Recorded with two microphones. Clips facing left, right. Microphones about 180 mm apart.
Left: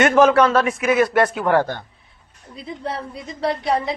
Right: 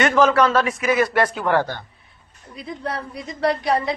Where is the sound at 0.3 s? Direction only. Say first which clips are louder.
Left 2 dB; centre (ahead or behind).